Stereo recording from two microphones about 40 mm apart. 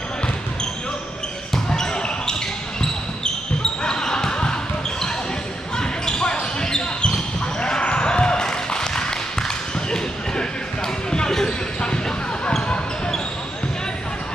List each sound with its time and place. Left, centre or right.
1.5 s basketball bounce: centre
3.6 s basketball bounce: centre
5.8 s basketball bounce: centre